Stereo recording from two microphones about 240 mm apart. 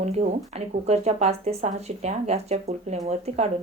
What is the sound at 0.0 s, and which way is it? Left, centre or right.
A woman's voice, right.